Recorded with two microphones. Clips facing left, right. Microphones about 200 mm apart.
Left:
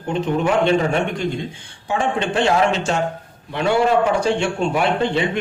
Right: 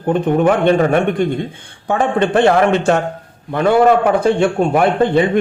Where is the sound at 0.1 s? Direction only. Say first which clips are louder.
Right 6 dB; 55° right (ahead or behind).